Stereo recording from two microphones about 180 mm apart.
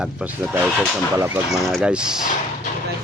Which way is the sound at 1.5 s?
Centre (ahead or behind).